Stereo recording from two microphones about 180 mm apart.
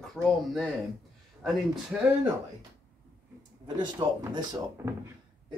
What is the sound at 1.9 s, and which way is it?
Speech, 5° right (ahead or behind).